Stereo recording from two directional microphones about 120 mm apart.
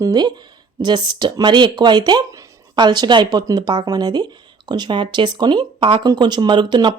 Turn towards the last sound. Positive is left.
turn(degrees=-40)  # may be behind; listen again after turning